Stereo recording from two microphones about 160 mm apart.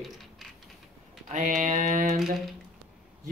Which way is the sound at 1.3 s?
50° right (ahead or behind).